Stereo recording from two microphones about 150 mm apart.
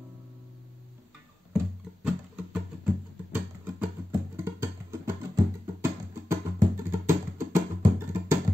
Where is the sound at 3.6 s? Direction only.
10° right (ahead or behind).